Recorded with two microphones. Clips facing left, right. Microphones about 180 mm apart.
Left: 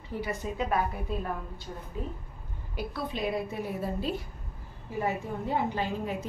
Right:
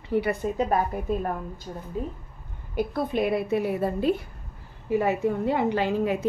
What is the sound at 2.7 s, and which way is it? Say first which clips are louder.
A woman's voice: right 8 dB; 50° right (ahead or behind).